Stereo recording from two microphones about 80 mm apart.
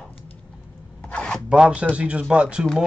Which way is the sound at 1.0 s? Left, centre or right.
Centre.